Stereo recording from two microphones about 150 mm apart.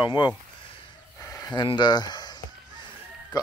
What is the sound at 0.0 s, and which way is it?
Speech, 30° left (ahead or behind).